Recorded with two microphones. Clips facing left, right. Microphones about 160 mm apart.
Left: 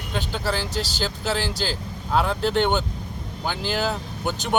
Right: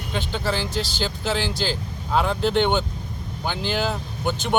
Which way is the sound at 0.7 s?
40° left (ahead or behind).